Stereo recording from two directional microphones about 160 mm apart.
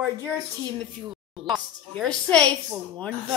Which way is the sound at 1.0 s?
30° right (ahead or behind).